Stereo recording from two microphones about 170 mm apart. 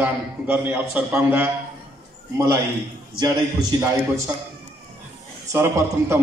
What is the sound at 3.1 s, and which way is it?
A man's voice, 25° right (ahead or behind).